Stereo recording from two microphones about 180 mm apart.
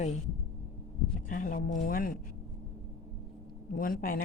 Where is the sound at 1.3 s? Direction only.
50° left (ahead or behind).